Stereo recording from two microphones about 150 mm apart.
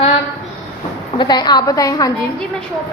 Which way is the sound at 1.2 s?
30° left (ahead or behind).